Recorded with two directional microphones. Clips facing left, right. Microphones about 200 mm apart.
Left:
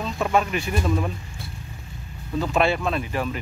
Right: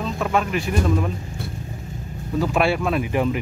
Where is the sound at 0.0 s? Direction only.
Centre (ahead or behind).